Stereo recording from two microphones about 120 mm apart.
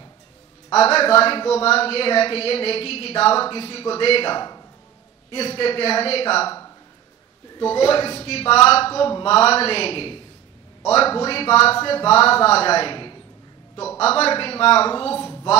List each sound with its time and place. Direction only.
0.7 s speech: 55° left (ahead or behind)
7.8 s a man's voice: 55° left (ahead or behind)
13.9 s speech: 55° left (ahead or behind)